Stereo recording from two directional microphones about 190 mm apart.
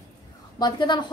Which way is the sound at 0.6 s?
25° left (ahead or behind).